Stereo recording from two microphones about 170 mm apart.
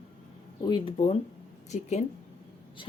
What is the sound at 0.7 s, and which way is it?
A woman's voice, 35° left (ahead or behind).